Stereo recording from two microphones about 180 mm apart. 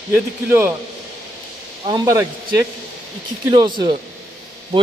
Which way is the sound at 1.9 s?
20° right (ahead or behind).